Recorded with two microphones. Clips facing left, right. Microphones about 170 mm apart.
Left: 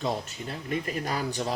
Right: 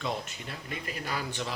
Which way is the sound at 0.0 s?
40° left (ahead or behind).